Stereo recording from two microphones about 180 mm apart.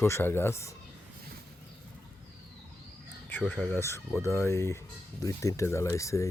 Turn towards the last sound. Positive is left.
turn(degrees=15)  # may be behind; listen again after turning